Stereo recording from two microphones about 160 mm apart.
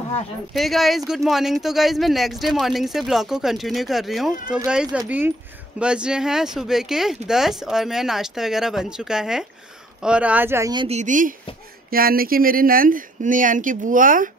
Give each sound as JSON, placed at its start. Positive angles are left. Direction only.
{"t": 0.5, "sound": "speech", "side_deg": 0}
{"t": 10.9, "sound": "speech", "side_deg": -50}
{"t": 11.9, "sound": "speech", "side_deg": -65}